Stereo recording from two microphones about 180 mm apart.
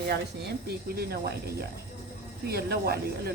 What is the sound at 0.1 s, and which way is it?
Speech, 60° right (ahead or behind).